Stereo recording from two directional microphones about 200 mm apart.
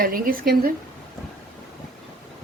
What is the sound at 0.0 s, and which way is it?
Speech, 45° right (ahead or behind).